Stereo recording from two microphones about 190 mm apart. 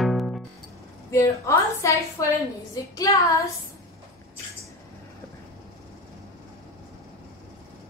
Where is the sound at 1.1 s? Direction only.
15° left (ahead or behind).